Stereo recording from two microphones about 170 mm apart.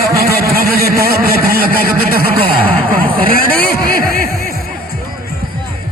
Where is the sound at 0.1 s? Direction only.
65° right (ahead or behind).